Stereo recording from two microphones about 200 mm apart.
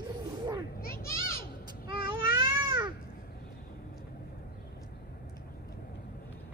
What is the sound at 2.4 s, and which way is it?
Baby cry, 20° right (ahead or behind).